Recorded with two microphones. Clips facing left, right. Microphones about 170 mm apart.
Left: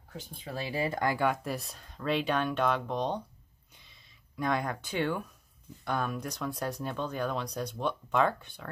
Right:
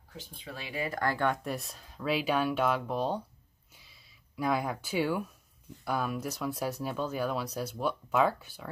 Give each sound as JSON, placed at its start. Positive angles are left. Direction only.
{"t": 0.4, "sound": "speech", "side_deg": 40}
{"t": 1.0, "sound": "speech", "side_deg": 10}
{"t": 3.7, "sound": "a sound", "side_deg": -5}
{"t": 5.9, "sound": "speech", "side_deg": -5}